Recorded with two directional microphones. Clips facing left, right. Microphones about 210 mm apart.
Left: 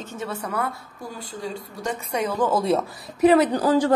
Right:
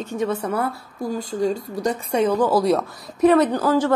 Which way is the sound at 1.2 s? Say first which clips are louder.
Right 10 dB; 45° right (ahead or behind).